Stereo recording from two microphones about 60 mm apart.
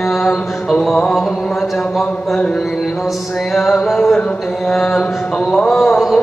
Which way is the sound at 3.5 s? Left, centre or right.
Centre.